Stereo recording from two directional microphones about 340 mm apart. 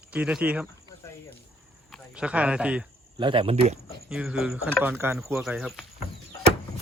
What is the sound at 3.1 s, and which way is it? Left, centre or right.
Speech, centre.